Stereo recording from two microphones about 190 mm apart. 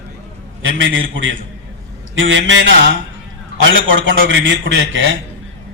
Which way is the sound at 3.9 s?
80° right.